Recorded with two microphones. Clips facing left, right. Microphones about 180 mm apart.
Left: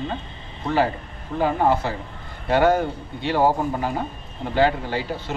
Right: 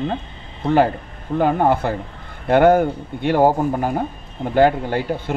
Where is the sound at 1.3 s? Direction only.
55° right (ahead or behind).